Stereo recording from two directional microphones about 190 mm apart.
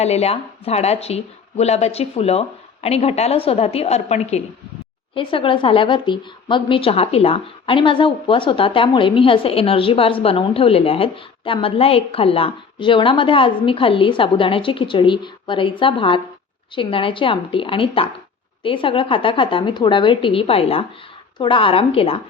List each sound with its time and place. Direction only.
0.0 s speech: 35° left (ahead or behind)